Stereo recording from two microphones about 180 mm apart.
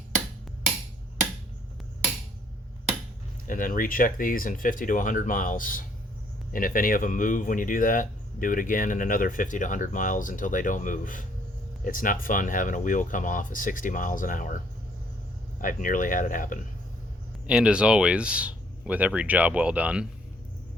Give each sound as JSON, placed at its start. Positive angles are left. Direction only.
{"t": 3.4, "sound": "speech", "side_deg": 50}
{"t": 15.6, "sound": "speech", "side_deg": 50}
{"t": 17.4, "sound": "speech", "side_deg": -5}